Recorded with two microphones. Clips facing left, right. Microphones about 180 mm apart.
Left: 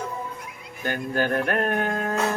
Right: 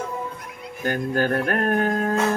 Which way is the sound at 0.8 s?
40° right (ahead or behind).